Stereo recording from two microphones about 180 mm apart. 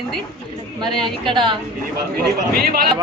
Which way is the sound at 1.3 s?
25° right (ahead or behind).